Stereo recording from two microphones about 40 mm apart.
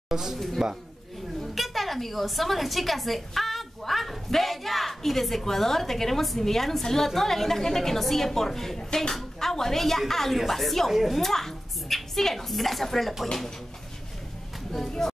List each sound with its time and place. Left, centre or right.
0.1 s a woman's voice: centre
1.4 s a woman's voice: centre
10.9 s a woman's voice: centre
11.1 s a woman's voice: centre
15.0 s speech: centre